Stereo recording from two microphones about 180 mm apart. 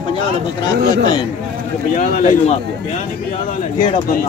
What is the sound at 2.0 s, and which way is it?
Speech, 45° left (ahead or behind).